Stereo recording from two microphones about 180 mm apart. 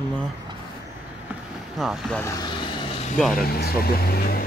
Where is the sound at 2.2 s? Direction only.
20° left (ahead or behind).